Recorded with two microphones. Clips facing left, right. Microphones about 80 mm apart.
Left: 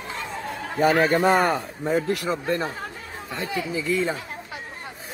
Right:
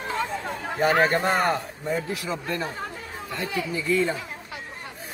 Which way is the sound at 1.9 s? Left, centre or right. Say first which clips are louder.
Left 5 dB; left.